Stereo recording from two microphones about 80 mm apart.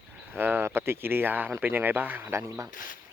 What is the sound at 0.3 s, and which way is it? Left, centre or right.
Speech, right.